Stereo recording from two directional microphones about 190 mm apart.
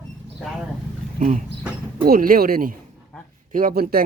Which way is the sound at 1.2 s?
40° right (ahead or behind).